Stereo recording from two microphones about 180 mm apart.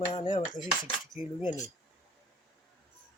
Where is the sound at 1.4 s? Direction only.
20° left (ahead or behind).